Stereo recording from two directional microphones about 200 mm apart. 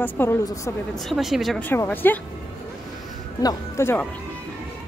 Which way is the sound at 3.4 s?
15° left (ahead or behind).